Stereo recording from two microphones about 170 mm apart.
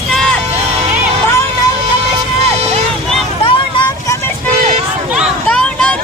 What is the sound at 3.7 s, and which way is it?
Vehicle, 25° left (ahead or behind).